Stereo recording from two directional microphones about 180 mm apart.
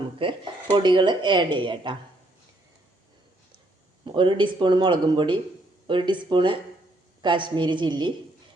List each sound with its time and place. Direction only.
0.2 s speech: 30° right (ahead or behind)
4.0 s speech: 25° right (ahead or behind)